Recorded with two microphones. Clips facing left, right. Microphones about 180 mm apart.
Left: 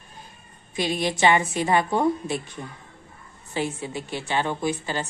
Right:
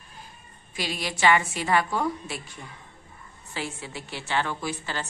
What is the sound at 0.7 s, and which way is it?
A woman's voice, 20° left (ahead or behind).